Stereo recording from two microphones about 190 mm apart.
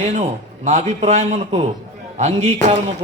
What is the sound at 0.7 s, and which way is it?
A man's voice, 35° right (ahead or behind).